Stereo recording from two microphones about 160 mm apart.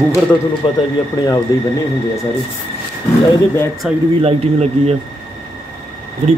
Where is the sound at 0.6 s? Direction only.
30° left (ahead or behind).